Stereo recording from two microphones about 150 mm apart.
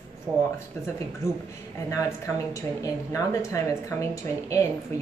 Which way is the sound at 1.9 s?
20° left (ahead or behind).